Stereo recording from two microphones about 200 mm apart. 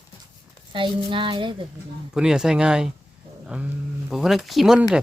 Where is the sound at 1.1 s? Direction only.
25° right (ahead or behind).